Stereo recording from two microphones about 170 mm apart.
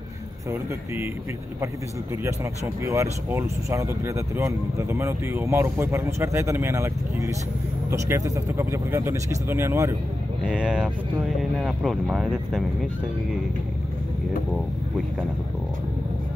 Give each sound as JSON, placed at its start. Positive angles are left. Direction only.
{"t": 2.8, "sound": "speech", "side_deg": -15}
{"t": 10.4, "sound": "speech", "side_deg": -5}